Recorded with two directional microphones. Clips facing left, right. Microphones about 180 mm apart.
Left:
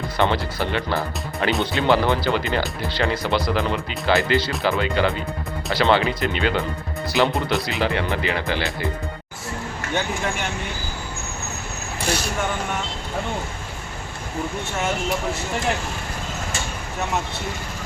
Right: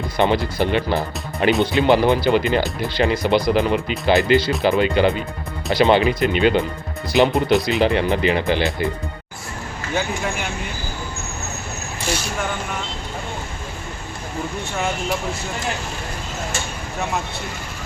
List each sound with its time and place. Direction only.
0.2 s speech: 15° right (ahead or behind)